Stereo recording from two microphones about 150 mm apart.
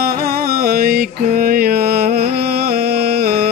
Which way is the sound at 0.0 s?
90° right.